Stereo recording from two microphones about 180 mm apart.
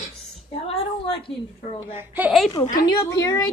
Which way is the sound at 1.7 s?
10° right (ahead or behind).